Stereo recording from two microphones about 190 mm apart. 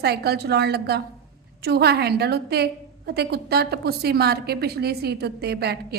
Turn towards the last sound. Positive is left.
turn(degrees=-60)  # may be behind; listen again after turning